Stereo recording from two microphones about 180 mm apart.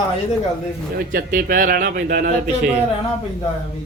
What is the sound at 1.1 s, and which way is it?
A man's voice, 50° right (ahead or behind).